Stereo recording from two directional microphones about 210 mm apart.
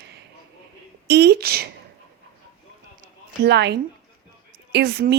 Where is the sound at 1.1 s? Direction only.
50° right (ahead or behind).